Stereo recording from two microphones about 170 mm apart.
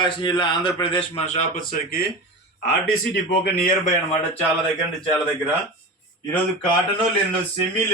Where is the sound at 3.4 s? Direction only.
55° left (ahead or behind).